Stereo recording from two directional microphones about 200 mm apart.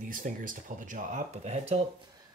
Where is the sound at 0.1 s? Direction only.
40° right (ahead or behind).